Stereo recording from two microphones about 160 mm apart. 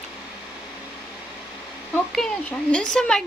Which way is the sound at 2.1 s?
5° left (ahead or behind).